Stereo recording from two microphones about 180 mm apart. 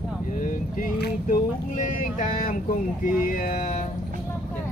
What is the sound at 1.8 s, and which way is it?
Speech, 45° left (ahead or behind).